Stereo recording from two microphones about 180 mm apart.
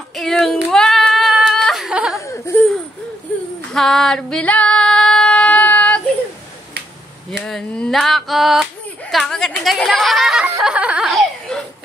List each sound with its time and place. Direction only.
0.1 s child singing: centre (ahead or behind)
0.7 s a sound: centre (ahead or behind)
2.1 s laughter: 15° left (ahead or behind)
3.7 s female singing: centre (ahead or behind)
7.4 s a woman's voice: 5° left (ahead or behind)
10.6 s a sound: 5° right (ahead or behind)